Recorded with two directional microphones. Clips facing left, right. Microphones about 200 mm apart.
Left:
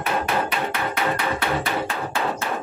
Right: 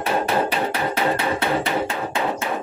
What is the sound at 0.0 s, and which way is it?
Hammer, 30° right (ahead or behind).